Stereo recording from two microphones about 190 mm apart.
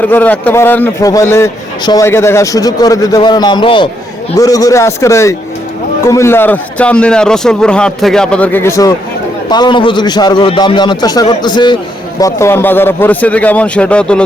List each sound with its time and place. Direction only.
0.1 s a man's voice: 10° left (ahead or behind)